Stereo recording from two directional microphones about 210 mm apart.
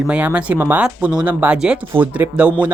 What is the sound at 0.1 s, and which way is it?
Speech, 5° right (ahead or behind).